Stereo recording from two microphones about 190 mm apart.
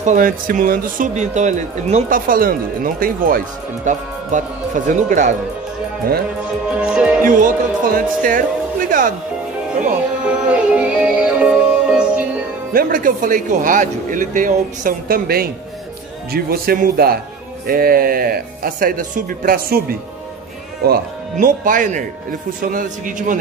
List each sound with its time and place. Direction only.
0.0 s speech: 45° right (ahead or behind)
6.7 s music: 5° right (ahead or behind)
7.2 s speech: 45° right (ahead or behind)
10.2 s music: 5° right (ahead or behind)
12.7 s speech: 45° right (ahead or behind)